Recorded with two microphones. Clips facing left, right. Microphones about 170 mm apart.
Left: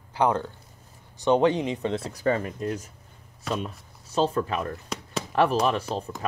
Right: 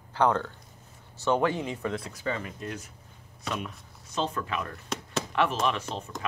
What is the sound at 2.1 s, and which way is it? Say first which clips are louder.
Speech: left 8 dB; 45° left (ahead or behind).